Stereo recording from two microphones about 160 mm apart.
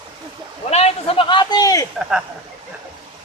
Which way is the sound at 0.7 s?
40° left (ahead or behind).